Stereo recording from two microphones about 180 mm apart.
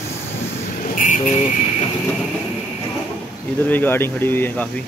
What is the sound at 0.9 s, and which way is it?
Vehicle, 45° left (ahead or behind).